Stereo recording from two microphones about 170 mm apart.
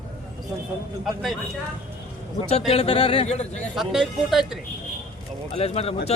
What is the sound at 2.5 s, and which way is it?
A man's voice, 40° left (ahead or behind).